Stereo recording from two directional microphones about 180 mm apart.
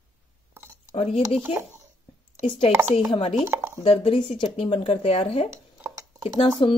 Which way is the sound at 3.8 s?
35° left (ahead or behind).